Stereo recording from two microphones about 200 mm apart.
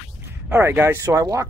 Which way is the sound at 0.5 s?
10° right (ahead or behind).